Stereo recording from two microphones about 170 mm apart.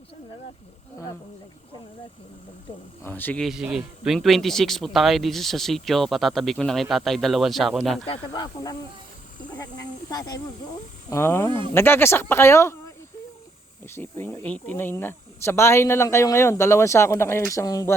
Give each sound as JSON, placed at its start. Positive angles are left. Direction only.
{"t": 3.0, "sound": "speech", "side_deg": 10}
{"t": 3.4, "sound": "speech", "side_deg": -5}
{"t": 8.0, "sound": "speech", "side_deg": 30}
{"t": 10.1, "sound": "speech", "side_deg": 20}
{"t": 13.8, "sound": "speech", "side_deg": 15}